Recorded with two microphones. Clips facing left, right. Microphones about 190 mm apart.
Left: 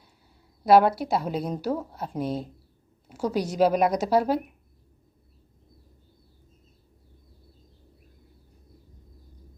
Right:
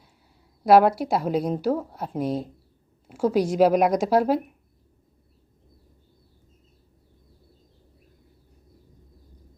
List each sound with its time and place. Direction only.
0.7 s speech: centre (ahead or behind)